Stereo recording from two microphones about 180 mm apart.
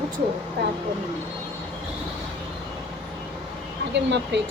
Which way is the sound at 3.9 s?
75° right (ahead or behind).